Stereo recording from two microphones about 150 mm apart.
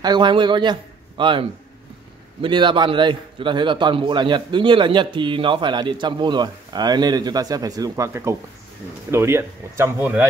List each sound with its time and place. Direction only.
0.0 s a man's voice: 30° right (ahead or behind)
2.4 s a man's voice: 35° right (ahead or behind); by 10.2 s 15° right (ahead or behind)